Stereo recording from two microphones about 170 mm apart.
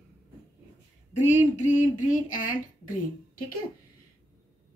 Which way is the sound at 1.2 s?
45° left (ahead or behind).